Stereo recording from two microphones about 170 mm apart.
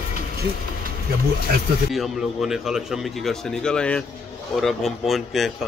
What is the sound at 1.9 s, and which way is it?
A man's voice, centre (ahead or behind).